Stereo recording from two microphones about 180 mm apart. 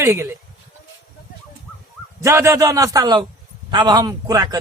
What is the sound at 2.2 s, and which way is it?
A man's voice, 15° right (ahead or behind).